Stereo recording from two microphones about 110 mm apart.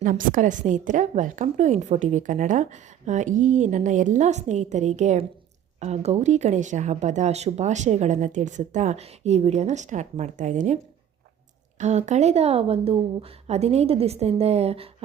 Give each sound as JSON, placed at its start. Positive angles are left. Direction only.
{"t": 0.6, "sound": "speech", "side_deg": -90}
{"t": 11.8, "sound": "a woman's voice", "side_deg": -90}